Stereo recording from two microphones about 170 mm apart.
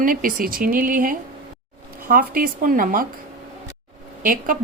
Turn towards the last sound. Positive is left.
turn(degrees=-50)  # may be behind; listen again after turning